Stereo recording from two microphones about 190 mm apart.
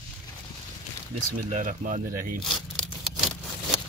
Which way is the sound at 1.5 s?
40° right (ahead or behind).